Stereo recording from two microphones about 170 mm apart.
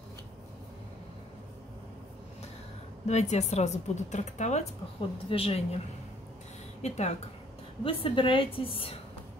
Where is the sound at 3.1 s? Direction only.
40° left (ahead or behind).